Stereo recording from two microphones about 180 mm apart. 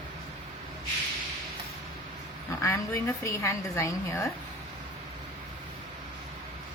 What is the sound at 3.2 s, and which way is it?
A woman's voice, 15° left (ahead or behind).